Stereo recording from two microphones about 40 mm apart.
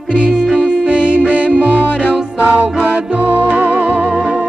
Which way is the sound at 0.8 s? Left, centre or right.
Right.